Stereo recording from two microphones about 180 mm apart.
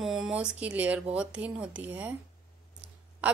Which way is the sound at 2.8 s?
5° right (ahead or behind).